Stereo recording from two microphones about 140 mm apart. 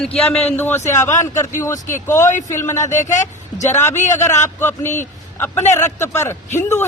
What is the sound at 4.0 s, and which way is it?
Speech, 60° left (ahead or behind).